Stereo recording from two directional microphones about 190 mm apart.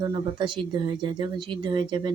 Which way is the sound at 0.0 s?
25° right (ahead or behind).